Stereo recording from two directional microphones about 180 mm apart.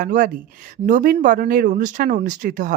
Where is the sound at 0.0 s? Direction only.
50° right (ahead or behind).